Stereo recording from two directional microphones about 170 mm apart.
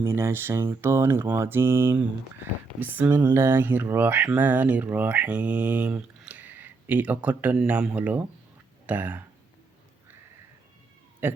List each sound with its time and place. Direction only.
0.0 s speech: 15° right (ahead or behind)
11.2 s speech: 10° right (ahead or behind)